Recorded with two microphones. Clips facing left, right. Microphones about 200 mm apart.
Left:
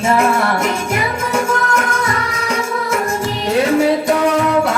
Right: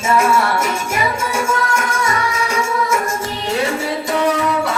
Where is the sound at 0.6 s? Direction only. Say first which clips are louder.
Left 2 dB; 60° left (ahead or behind).